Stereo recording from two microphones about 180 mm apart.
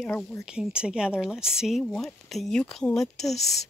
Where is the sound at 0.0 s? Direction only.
5° left (ahead or behind).